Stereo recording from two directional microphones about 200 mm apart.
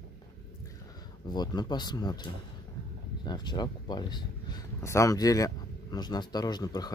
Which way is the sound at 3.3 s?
20° left (ahead or behind).